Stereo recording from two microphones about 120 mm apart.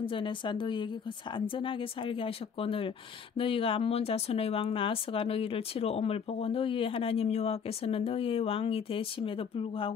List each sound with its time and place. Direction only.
0.0 s speech: 45° left (ahead or behind)